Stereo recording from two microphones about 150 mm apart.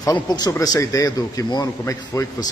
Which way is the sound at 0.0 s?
25° left (ahead or behind).